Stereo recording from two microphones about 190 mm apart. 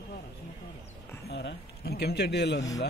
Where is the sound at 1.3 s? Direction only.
65° left (ahead or behind).